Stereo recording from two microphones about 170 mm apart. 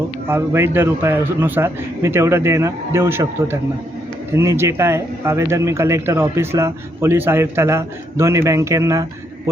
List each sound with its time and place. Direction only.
0.3 s a man's voice: 15° right (ahead or behind)